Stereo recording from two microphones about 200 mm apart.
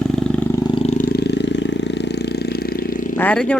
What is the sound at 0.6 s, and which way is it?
Vehicle, 30° left (ahead or behind).